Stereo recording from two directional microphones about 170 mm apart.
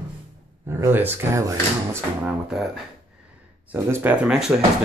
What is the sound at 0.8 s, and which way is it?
Speech, 15° right (ahead or behind).